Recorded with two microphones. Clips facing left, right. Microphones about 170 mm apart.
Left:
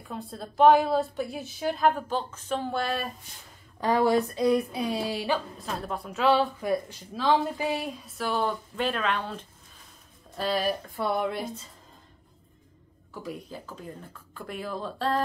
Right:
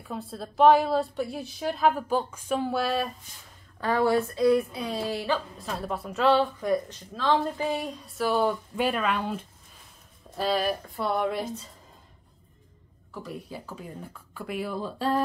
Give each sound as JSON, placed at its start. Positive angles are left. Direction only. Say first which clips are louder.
{"t": 0.0, "sound": "speech", "louder": "right 2 dB", "side_deg": 0}
{"t": 3.8, "sound": "speech", "louder": "left 1 dB", "side_deg": 15}
{"t": 5.6, "sound": "speech", "louder": "right 1 dB", "side_deg": 0}
{"t": 13.1, "sound": "speech", "louder": "even", "side_deg": -5}